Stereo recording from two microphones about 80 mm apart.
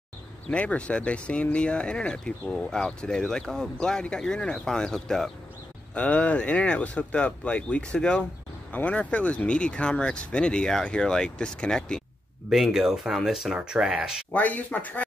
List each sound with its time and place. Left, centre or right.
0.5 s speech: centre
5.9 s speech: centre
12.4 s speech: centre
14.3 s speech: centre